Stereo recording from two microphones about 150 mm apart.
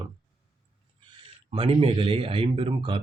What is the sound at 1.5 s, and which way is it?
Speech, 40° right (ahead or behind).